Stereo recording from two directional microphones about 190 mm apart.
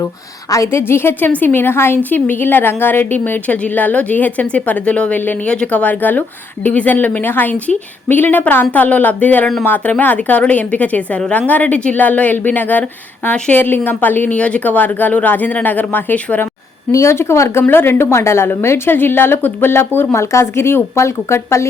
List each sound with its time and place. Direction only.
0.5 s a woman's voice: 15° left (ahead or behind)